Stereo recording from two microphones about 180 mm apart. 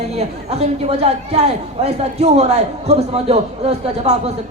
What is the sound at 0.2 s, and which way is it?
A man's voice, 35° right (ahead or behind).